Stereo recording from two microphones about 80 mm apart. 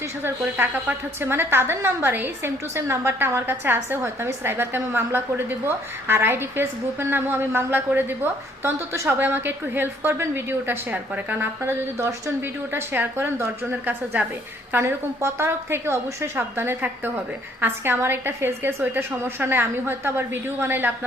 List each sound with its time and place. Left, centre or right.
0.2 s a woman's voice: right
11.3 s a woman's voice: right